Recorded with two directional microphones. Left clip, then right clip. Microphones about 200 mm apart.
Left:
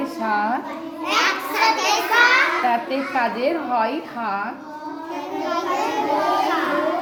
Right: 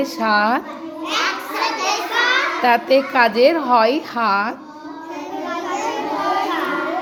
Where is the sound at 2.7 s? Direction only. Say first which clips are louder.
Right 7 dB; 55° right (ahead or behind).